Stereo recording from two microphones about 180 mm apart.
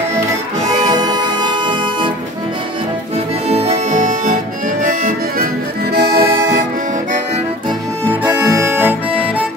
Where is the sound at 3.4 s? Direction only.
35° right (ahead or behind).